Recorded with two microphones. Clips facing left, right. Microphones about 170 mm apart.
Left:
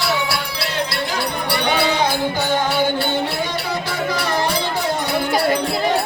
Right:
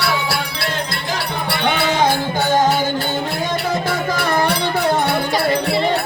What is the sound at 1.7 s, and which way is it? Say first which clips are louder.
Music: right 2 dB; 45° right (ahead or behind).